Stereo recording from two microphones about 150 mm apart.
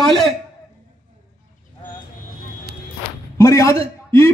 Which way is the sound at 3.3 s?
20° left (ahead or behind).